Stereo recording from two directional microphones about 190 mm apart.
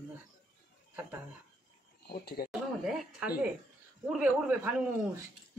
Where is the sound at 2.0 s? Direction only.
55° left (ahead or behind).